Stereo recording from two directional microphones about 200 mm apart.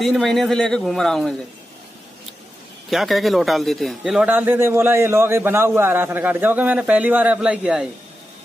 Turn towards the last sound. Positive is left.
turn(degrees=-5)  # may be behind; listen again after turning